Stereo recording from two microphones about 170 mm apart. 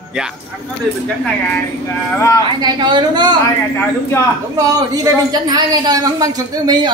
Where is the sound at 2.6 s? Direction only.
25° right (ahead or behind).